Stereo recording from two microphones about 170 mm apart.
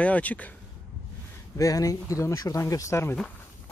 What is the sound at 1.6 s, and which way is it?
Speech, 20° left (ahead or behind).